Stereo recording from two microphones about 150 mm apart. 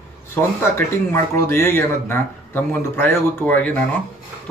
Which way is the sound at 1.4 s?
15° left (ahead or behind).